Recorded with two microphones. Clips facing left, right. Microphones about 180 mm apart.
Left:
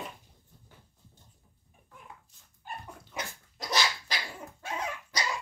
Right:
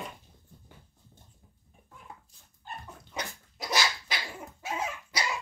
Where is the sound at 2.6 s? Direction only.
15° left (ahead or behind).